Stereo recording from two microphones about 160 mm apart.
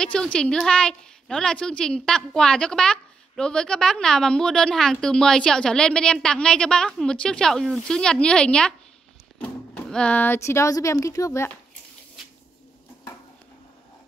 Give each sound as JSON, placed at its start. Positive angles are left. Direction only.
{"t": 0.0, "sound": "a woman's voice", "side_deg": 5}